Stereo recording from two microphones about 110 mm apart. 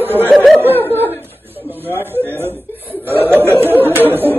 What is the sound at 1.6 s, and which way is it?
Chuckle, 20° right (ahead or behind).